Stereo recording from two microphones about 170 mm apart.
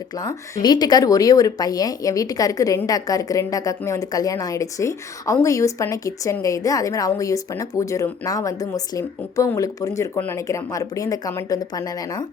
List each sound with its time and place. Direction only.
0.2 s speech: 20° left (ahead or behind)